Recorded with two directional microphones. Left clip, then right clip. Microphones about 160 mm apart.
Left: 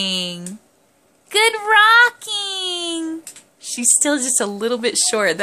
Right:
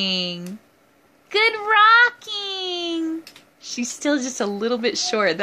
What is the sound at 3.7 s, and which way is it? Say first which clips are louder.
Speech: left 4 dB; 20° left (ahead or behind).